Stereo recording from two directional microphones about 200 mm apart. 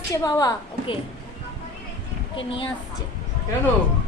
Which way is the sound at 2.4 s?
25° left (ahead or behind).